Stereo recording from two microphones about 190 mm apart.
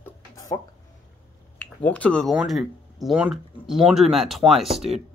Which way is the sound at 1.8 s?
5° left (ahead or behind).